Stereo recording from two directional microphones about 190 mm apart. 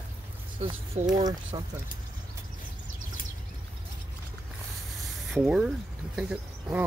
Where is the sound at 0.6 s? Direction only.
30° right (ahead or behind).